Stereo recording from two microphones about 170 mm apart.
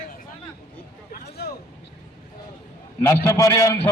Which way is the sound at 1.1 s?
70° left (ahead or behind).